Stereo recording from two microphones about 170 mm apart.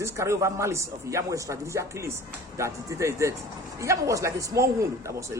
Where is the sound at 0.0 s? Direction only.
15° right (ahead or behind).